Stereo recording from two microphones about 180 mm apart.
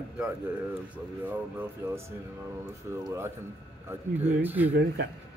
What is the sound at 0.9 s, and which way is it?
Speech, 10° right (ahead or behind).